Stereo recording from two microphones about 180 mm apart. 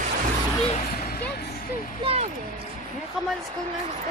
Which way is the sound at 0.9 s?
55° left (ahead or behind).